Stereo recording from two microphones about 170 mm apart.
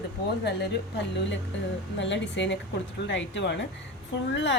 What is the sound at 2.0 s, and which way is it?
A woman's voice, 90° left.